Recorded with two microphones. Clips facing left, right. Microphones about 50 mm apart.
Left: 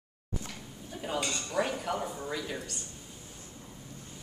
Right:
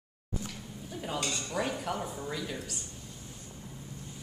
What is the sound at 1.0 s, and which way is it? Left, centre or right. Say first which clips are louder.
Speech: left 1 dB; centre.